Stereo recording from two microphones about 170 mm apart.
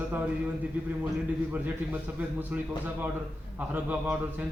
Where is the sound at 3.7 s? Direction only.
10° right (ahead or behind).